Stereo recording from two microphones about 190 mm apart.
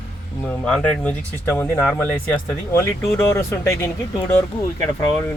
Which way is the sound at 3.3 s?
15° left (ahead or behind).